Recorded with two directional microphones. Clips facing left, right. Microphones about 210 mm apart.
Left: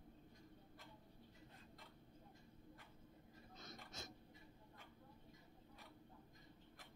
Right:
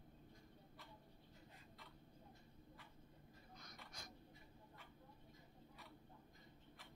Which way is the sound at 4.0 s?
25° left (ahead or behind).